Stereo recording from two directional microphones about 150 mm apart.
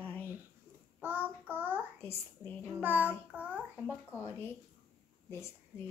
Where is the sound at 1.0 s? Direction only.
15° right (ahead or behind).